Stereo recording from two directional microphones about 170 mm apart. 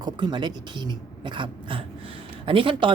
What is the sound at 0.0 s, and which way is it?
Speech, 25° right (ahead or behind).